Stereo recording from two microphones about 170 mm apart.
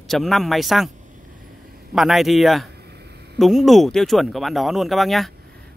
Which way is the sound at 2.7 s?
70° right (ahead or behind).